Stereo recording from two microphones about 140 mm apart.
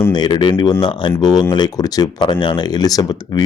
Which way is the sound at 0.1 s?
30° left (ahead or behind).